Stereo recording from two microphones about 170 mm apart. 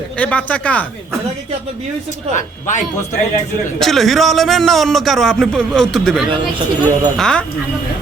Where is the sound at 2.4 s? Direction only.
45° left (ahead or behind).